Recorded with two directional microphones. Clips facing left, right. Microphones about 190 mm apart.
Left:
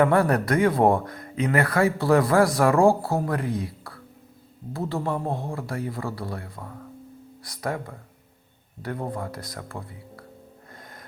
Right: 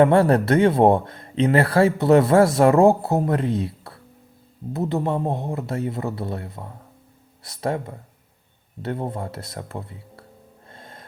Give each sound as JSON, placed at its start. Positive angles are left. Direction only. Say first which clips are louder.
{"t": 0.0, "sound": "speech", "louder": "right 4 dB", "side_deg": -25}
{"t": 10.8, "sound": "snort", "louder": "right 4 dB", "side_deg": -25}